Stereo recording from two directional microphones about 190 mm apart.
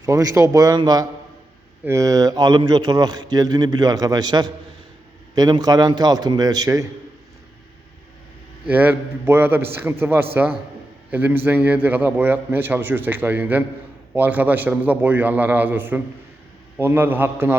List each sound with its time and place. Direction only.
0.0 s a man's voice: 15° right (ahead or behind)
8.6 s a man's voice: 10° right (ahead or behind)